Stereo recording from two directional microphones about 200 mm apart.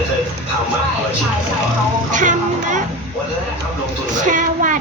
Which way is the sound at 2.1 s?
40° right (ahead or behind).